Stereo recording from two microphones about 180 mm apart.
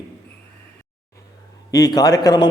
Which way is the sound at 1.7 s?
20° left (ahead or behind).